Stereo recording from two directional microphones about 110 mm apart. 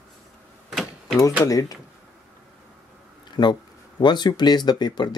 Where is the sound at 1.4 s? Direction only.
30° left (ahead or behind).